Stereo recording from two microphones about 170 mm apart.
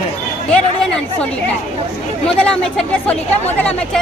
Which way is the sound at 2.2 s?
5° left (ahead or behind).